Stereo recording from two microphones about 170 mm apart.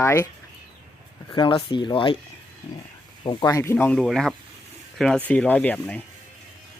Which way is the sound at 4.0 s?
Centre (ahead or behind).